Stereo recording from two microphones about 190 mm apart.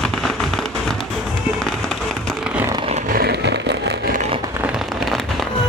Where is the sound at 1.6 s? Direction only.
5° left (ahead or behind).